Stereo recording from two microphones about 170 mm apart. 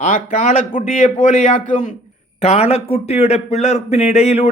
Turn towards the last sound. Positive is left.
turn(degrees=40)  # may be behind; listen again after turning